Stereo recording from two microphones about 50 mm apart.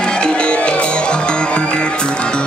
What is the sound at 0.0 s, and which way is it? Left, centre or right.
Music, centre.